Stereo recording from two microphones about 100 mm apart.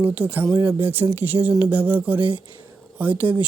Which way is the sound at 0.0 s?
15° right (ahead or behind).